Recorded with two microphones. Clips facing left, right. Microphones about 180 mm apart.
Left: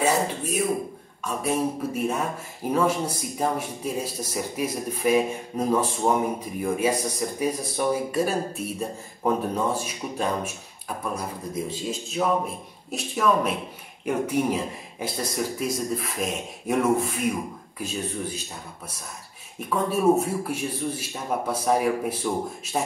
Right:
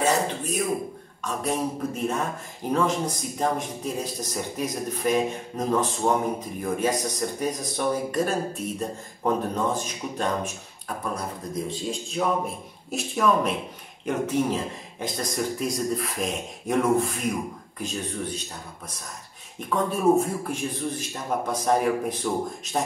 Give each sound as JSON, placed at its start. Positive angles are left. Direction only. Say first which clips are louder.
{"t": 0.0, "sound": "throat clearing", "louder": "even", "side_deg": 10}
{"t": 1.2, "sound": "a man's voice", "louder": "left 2 dB", "side_deg": 10}
{"t": 19.7, "sound": "speech", "louder": "even", "side_deg": 5}